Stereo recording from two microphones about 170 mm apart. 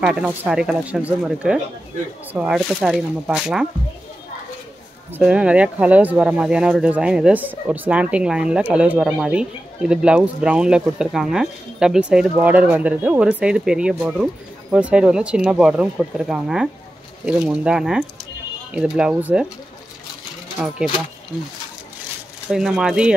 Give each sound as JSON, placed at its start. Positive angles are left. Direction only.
{"t": 0.0, "sound": "speech", "side_deg": -5}
{"t": 5.1, "sound": "speech", "side_deg": -5}
{"t": 20.6, "sound": "speech", "side_deg": 0}
{"t": 22.5, "sound": "speech", "side_deg": -5}